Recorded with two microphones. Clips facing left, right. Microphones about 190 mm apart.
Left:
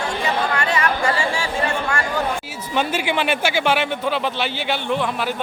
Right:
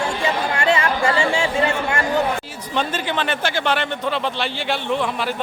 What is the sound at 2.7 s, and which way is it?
Speech, 10° left (ahead or behind).